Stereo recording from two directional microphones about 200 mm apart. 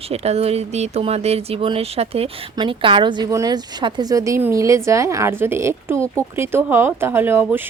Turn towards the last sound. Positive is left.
turn(degrees=-10)  # may be behind; listen again after turning